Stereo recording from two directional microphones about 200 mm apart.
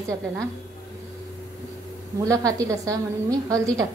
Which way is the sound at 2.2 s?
15° right (ahead or behind).